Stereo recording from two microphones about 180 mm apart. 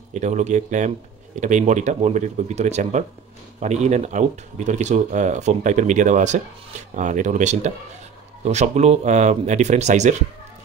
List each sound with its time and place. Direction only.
0.1 s speech: 40° right (ahead or behind)